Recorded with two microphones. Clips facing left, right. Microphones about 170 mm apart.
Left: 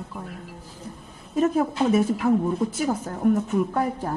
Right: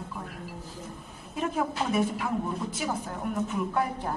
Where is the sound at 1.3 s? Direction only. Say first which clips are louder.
Left 8 dB; 40° left (ahead or behind).